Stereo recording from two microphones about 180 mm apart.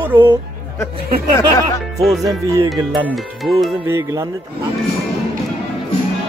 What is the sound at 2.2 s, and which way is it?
Music, 20° right (ahead or behind).